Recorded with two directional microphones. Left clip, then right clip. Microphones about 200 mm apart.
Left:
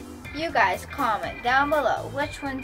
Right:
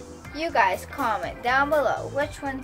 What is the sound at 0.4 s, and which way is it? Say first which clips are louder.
A woman's voice: even; 25° right (ahead or behind).